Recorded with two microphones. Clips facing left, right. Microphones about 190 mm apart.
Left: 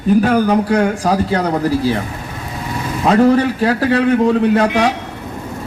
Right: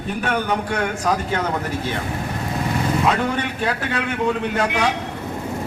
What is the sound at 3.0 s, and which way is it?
A man's voice, 35° left (ahead or behind).